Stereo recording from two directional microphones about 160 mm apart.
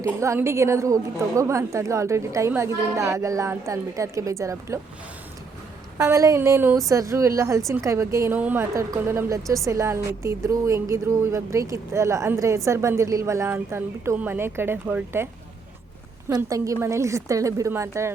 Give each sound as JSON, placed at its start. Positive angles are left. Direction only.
{"t": 0.0, "sound": "a woman's voice", "side_deg": -20}
{"t": 6.0, "sound": "a woman's voice", "side_deg": -20}
{"t": 16.3, "sound": "a woman's voice", "side_deg": -20}